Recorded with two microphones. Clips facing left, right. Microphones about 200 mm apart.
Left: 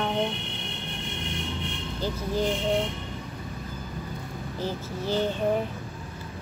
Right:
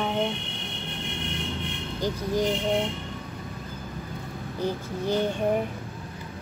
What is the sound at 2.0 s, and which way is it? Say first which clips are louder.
Speech: right 2 dB; 15° right (ahead or behind).